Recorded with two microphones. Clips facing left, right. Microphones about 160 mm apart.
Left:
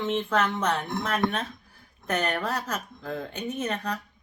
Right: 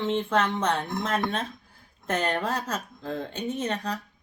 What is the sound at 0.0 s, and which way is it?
Speech, 30° right (ahead or behind).